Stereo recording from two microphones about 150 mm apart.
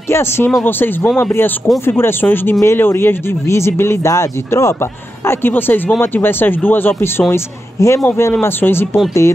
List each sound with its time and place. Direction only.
0.1 s speech: 15° left (ahead or behind)